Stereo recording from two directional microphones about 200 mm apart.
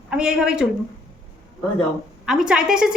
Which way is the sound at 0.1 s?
5° right (ahead or behind).